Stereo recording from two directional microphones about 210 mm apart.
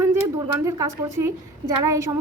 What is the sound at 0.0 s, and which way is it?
A woman's voice, 15° right (ahead or behind).